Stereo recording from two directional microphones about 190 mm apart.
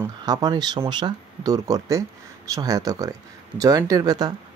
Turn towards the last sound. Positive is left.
turn(degrees=-20)  # may be behind; listen again after turning